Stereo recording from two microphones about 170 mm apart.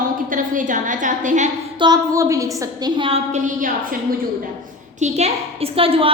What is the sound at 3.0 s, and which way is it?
Speech, 35° right (ahead or behind).